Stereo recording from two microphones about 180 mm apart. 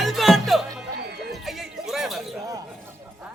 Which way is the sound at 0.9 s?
65° right (ahead or behind).